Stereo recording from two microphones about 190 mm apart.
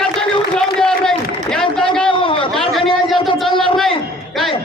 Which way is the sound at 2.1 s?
30° left (ahead or behind).